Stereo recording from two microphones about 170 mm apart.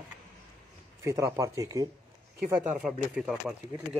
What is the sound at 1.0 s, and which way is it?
Speech, 20° right (ahead or behind).